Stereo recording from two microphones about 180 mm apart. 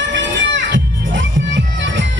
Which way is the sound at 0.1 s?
85° right.